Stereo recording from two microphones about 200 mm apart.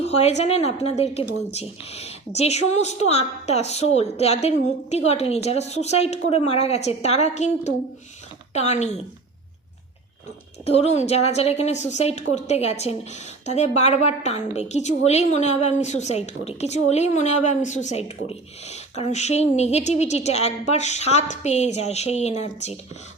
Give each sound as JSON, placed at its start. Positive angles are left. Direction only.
{"t": 0.0, "sound": "a woman's voice", "side_deg": 30}
{"t": 10.7, "sound": "a woman's voice", "side_deg": 30}